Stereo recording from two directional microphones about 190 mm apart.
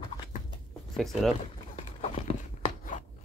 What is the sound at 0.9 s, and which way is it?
Speech, centre (ahead or behind).